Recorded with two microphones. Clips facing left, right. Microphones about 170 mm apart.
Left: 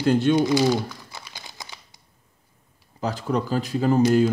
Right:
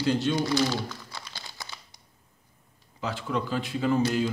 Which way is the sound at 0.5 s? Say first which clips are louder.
Left 6 dB; 15° left (ahead or behind).